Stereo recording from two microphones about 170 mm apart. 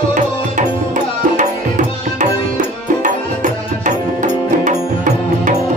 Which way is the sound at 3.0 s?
50° right (ahead or behind).